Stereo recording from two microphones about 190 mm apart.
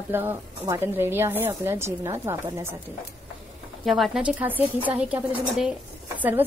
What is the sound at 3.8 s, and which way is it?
A woman's voice, centre (ahead or behind).